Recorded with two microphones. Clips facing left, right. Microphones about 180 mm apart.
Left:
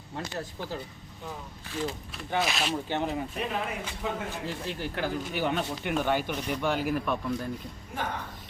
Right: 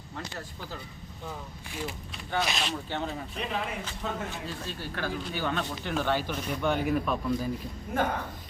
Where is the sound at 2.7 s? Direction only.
15° left (ahead or behind).